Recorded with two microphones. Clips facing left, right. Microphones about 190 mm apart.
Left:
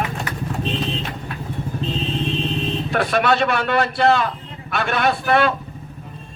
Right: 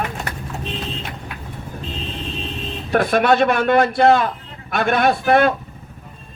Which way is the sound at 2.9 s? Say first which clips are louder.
Right 4 dB; 50° right (ahead or behind).